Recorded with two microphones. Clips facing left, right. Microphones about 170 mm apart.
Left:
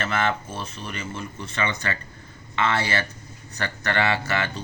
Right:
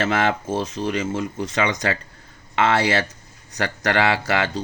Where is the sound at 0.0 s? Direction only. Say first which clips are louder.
Right 4 dB; 90° right.